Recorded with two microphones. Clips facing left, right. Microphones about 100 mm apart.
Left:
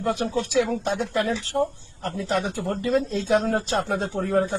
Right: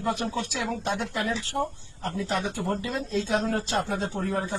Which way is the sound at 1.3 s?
60° left (ahead or behind).